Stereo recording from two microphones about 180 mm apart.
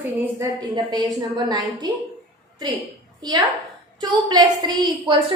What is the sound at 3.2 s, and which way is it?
A woman's voice, 20° right (ahead or behind).